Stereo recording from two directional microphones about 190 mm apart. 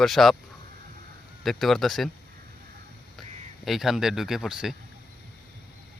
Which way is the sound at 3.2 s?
Centre (ahead or behind).